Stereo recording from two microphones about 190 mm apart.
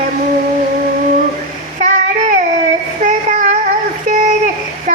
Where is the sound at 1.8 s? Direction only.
40° right (ahead or behind).